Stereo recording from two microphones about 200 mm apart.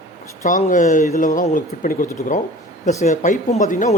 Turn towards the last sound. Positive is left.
turn(degrees=40)  # may be behind; listen again after turning